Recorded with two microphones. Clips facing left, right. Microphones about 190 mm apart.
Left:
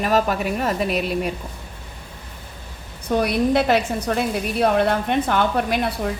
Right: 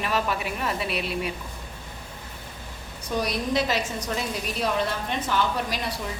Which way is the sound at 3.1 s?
60° left (ahead or behind).